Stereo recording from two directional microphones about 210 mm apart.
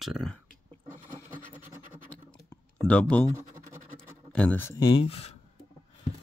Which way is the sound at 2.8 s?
5° left (ahead or behind).